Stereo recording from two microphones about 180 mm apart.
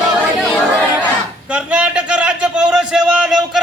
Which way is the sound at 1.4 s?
5° right (ahead or behind).